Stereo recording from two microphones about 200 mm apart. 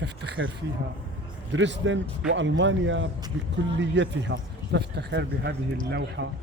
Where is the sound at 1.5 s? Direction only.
65° right (ahead or behind).